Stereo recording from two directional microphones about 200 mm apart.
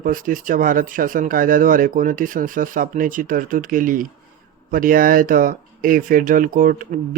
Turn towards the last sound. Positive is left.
turn(degrees=-40)  # may be behind; listen again after turning